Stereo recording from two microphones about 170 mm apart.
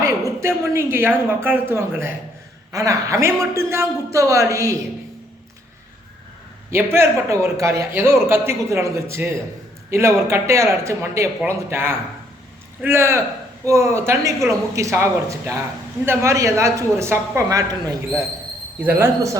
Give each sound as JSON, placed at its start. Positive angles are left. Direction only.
{"t": 0.3, "sound": "speech", "side_deg": -15}
{"t": 6.7, "sound": "speech", "side_deg": -15}